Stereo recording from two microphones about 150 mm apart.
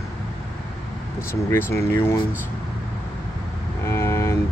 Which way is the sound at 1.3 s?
15° left (ahead or behind).